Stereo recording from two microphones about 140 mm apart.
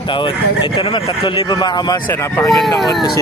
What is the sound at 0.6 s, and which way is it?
Speech, 40° left (ahead or behind).